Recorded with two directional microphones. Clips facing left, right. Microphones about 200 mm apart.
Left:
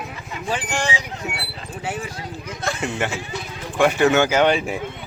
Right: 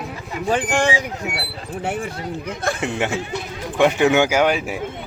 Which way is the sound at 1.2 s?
15° right (ahead or behind).